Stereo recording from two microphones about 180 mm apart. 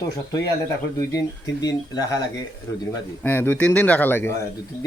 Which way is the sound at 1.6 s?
20° left (ahead or behind).